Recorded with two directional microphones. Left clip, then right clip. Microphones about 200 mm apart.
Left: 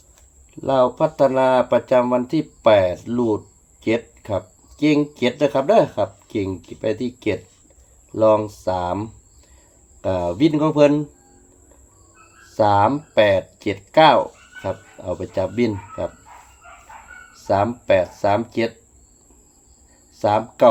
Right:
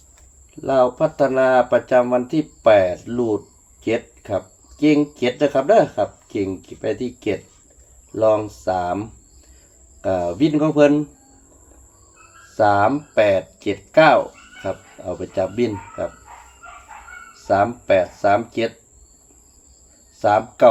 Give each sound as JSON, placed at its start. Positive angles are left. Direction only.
{"t": 0.6, "sound": "speech", "side_deg": 55}
{"t": 10.0, "sound": "speech", "side_deg": 55}
{"t": 12.5, "sound": "speech", "side_deg": 55}
{"t": 17.4, "sound": "speech", "side_deg": 55}
{"t": 20.1, "sound": "speech", "side_deg": 55}